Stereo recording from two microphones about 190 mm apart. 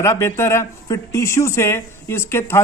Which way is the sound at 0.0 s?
15° left (ahead or behind).